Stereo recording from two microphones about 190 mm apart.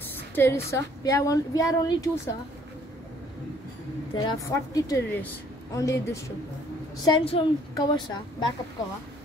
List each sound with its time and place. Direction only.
0.4 s a woman's voice: 15° left (ahead or behind)
4.1 s a woman's voice: 25° left (ahead or behind)